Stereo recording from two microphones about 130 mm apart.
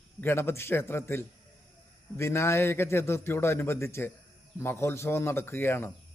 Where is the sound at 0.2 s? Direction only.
20° left (ahead or behind).